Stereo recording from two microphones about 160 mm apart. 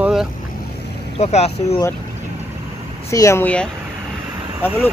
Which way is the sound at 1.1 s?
40° left (ahead or behind).